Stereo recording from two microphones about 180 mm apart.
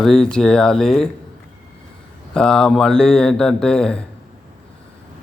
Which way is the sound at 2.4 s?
5° left (ahead or behind).